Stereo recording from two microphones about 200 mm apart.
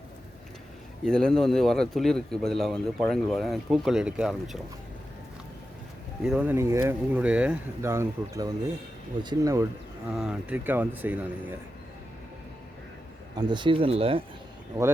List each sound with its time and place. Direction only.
1.0 s a man's voice: 5° left (ahead or behind)
6.2 s speech: 5° right (ahead or behind)
10.2 s speech: 5° right (ahead or behind)
13.3 s speech: 20° right (ahead or behind)